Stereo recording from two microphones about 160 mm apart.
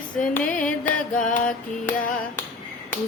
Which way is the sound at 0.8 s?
55° left (ahead or behind).